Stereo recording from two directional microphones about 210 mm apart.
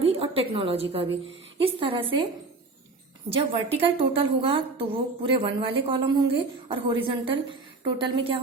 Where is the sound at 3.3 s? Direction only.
25° right (ahead or behind).